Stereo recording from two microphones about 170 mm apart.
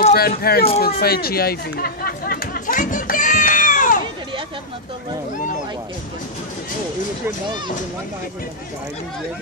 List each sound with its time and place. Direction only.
0.1 s speech: 65° left (ahead or behind)
0.7 s chatter: 65° left (ahead or behind)